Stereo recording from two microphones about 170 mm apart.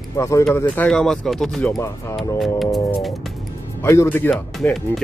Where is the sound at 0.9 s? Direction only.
5° left (ahead or behind).